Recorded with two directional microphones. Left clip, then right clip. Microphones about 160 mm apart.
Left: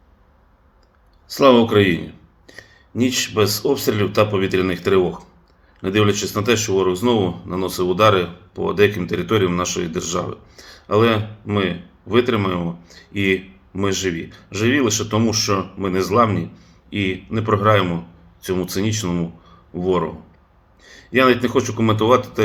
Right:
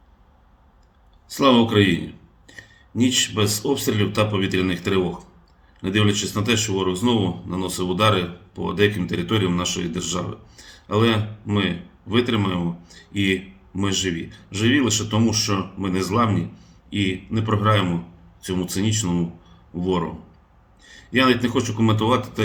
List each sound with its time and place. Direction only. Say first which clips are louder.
1.3 s speech: left 4 dB; 20° right (ahead or behind)
2.5 s a sound: left 2 dB; 20° right (ahead or behind)
3.7 s speech: left 3 dB; 20° right (ahead or behind)
20.8 s speech: left 3 dB; 15° right (ahead or behind)